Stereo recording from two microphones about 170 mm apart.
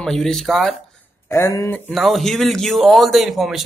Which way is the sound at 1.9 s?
Centre (ahead or behind).